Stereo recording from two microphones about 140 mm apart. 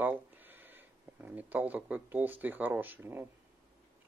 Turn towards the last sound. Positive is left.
turn(degrees=-15)  # may be behind; listen again after turning